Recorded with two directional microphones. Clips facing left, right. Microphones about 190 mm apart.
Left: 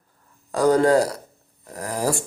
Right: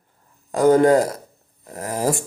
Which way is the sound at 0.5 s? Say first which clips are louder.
Right 3 dB; 20° right (ahead or behind).